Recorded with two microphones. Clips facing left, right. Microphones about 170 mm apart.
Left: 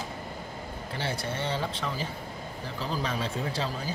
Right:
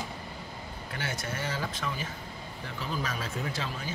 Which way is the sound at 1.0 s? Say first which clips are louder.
Left 3 dB; 30° left (ahead or behind).